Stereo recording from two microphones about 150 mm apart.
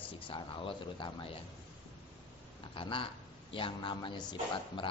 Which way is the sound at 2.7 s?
35° left (ahead or behind).